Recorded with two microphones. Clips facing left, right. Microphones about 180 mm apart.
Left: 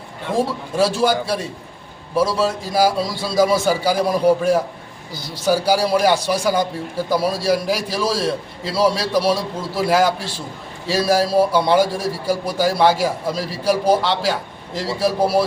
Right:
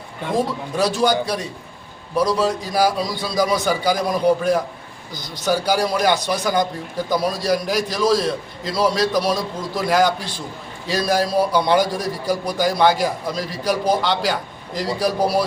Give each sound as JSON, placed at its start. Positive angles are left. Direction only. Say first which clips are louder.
{"t": 0.3, "sound": "a man's voice", "louder": "left 2 dB", "side_deg": 5}